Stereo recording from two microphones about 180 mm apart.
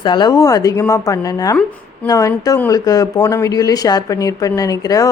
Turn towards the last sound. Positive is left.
turn(degrees=20)  # may be behind; listen again after turning